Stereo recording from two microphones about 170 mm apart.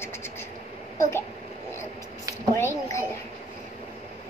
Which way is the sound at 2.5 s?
15° left (ahead or behind).